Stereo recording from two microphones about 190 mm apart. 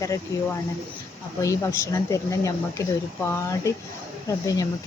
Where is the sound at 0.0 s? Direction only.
15° left (ahead or behind).